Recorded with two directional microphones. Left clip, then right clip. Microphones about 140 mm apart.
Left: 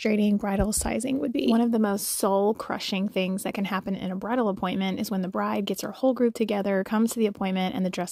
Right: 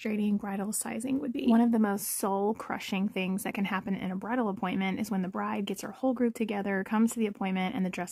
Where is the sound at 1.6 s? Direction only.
25° left (ahead or behind).